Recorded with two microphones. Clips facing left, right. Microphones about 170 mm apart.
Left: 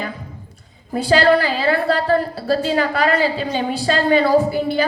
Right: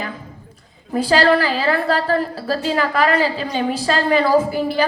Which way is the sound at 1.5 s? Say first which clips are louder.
Even; 40° right (ahead or behind).